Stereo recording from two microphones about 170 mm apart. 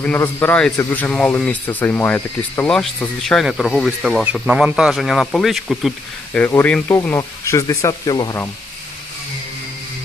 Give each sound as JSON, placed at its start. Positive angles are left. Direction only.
{"t": 0.0, "sound": "a man's voice", "side_deg": 15}
{"t": 6.3, "sound": "speech", "side_deg": 10}